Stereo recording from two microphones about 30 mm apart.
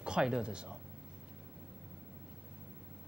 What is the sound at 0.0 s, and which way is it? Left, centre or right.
Speech, right.